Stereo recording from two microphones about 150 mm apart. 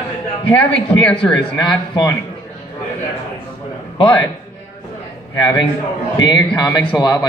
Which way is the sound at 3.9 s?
35° left (ahead or behind).